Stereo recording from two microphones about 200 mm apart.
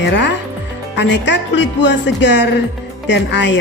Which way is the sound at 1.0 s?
60° left (ahead or behind).